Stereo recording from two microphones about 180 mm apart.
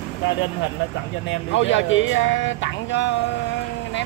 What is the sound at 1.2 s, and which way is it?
Speech, 90° left.